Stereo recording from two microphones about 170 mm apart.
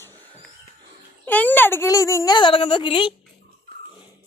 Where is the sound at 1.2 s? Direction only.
10° left (ahead or behind); by 3.1 s 30° left (ahead or behind).